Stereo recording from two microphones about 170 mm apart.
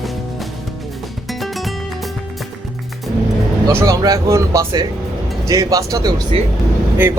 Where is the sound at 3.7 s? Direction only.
20° right (ahead or behind).